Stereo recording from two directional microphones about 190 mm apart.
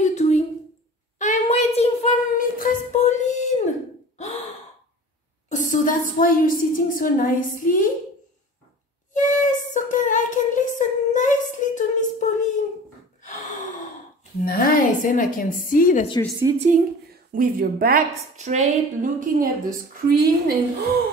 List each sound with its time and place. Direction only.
0.0 s a sound: 35° left (ahead or behind)
2.3 s music: 40° left (ahead or behind)
5.5 s a woman's voice: 45° left (ahead or behind)
9.1 s a sound: 40° left (ahead or behind)
13.2 s gasp: 40° left (ahead or behind)
14.4 s a woman's voice: 45° left (ahead or behind)
16.5 s a woman's voice: 40° right (ahead or behind)
17.3 s a woman's voice: 50° right (ahead or behind)